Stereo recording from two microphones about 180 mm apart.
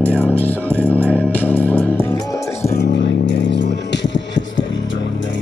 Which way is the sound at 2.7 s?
75° left (ahead or behind).